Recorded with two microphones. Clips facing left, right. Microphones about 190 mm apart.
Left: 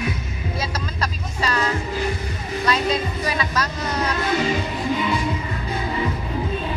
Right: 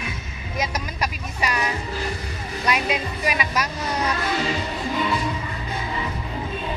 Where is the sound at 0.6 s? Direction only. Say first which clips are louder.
Right 2 dB; 15° right (ahead or behind).